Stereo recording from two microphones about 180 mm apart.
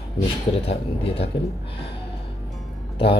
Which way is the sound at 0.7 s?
35° left (ahead or behind).